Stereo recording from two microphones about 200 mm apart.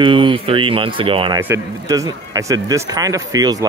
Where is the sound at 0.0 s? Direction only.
25° right (ahead or behind).